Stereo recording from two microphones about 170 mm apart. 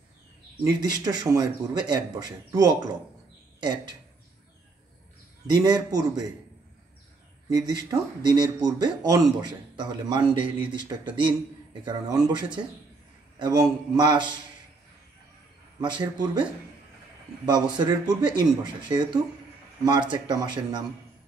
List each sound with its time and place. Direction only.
0.7 s speech: 25° right (ahead or behind)
5.5 s speech: 25° right (ahead or behind)
7.4 s speech: 20° right (ahead or behind)
15.8 s speech: 25° right (ahead or behind)
17.5 s speech: 25° right (ahead or behind)